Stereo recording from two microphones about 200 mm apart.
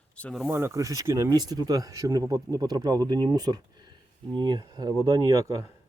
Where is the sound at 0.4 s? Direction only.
10° right (ahead or behind).